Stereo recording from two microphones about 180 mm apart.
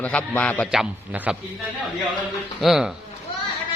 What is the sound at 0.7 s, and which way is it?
Speech, 5° right (ahead or behind).